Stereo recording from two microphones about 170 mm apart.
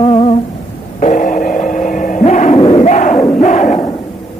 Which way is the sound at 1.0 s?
50° left (ahead or behind).